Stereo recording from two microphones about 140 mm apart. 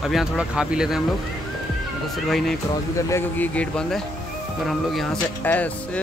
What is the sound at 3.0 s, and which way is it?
Speech, 20° left (ahead or behind).